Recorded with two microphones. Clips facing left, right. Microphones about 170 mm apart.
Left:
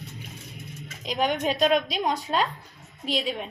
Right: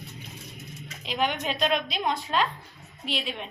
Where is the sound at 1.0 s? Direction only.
40° left (ahead or behind).